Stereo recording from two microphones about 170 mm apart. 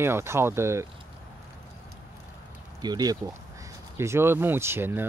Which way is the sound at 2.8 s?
25° right (ahead or behind).